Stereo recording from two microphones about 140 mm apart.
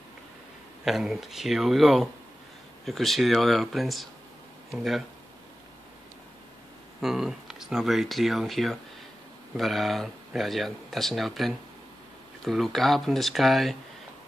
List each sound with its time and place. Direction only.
0.8 s speech: centre (ahead or behind)
7.0 s speech: centre (ahead or behind)